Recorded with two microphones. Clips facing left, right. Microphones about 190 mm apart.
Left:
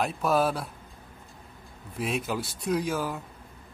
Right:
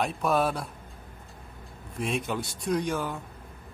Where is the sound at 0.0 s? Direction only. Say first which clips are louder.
Left 1 dB; centre (ahead or behind).